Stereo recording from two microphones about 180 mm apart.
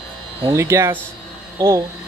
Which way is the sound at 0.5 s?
15° right (ahead or behind).